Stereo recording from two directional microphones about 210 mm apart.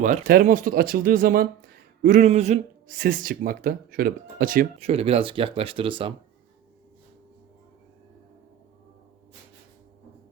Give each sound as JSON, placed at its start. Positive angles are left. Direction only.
{"t": 0.0, "sound": "speech", "side_deg": -40}